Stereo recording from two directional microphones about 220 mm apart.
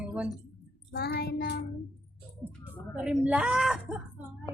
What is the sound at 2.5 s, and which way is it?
Speech, 5° right (ahead or behind).